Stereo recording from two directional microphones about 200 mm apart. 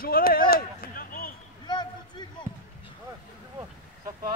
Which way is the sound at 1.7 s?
20° left (ahead or behind).